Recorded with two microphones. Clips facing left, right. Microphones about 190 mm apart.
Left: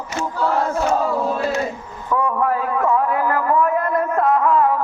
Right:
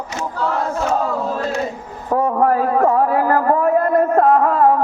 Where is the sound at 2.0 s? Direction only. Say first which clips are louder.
Right 4 dB; 45° right (ahead or behind).